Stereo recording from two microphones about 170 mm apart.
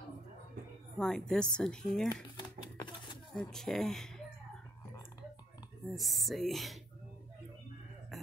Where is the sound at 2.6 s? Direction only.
25° left (ahead or behind).